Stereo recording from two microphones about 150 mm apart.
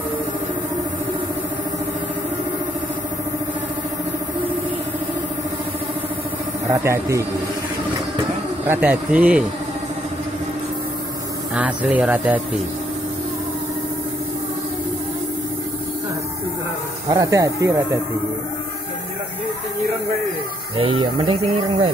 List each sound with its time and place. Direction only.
6.7 s speech: 20° right (ahead or behind)
8.6 s speech: 15° right (ahead or behind)
11.5 s speech: 10° right (ahead or behind)
17.1 s speech: 25° right (ahead or behind)
20.7 s speech: 35° right (ahead or behind)